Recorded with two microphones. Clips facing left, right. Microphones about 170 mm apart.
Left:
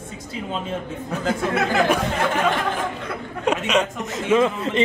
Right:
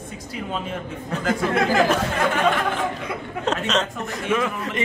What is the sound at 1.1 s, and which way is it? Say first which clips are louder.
A woman's voice: right 1 dB; 5° left (ahead or behind).